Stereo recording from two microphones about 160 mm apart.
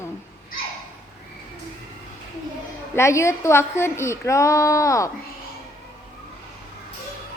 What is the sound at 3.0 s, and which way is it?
A woman's voice, 15° left (ahead or behind).